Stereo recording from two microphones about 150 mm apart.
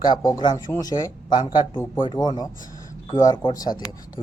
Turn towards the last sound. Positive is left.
turn(degrees=25)  # may be behind; listen again after turning